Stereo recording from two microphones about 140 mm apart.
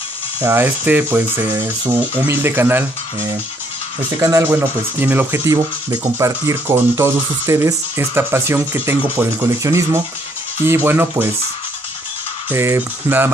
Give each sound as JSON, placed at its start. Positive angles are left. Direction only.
{"t": 0.4, "sound": "speech", "side_deg": -15}
{"t": 12.4, "sound": "speech", "side_deg": -15}